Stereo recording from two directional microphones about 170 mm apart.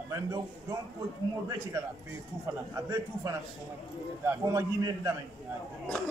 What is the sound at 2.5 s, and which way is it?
A man's voice, 15° right (ahead or behind).